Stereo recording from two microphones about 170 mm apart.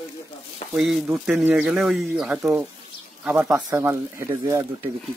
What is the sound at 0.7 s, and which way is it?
Speech, centre (ahead or behind).